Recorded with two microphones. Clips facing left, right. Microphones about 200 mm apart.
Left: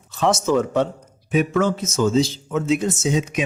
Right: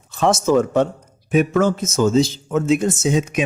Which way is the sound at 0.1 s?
50° right (ahead or behind).